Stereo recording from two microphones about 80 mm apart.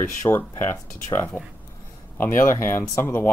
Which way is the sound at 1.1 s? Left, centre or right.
Left.